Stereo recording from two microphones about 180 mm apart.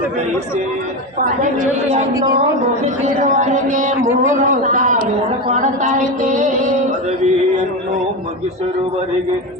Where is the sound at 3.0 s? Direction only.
45° right (ahead or behind).